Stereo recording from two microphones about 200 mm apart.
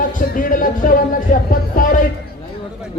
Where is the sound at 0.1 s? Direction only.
45° left (ahead or behind).